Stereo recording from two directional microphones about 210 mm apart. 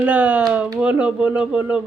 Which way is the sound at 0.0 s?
10° right (ahead or behind).